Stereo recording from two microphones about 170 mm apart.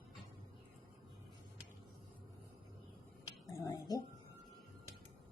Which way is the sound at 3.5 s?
20° left (ahead or behind).